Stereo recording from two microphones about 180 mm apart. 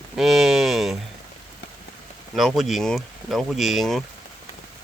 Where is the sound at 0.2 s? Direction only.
Centre (ahead or behind).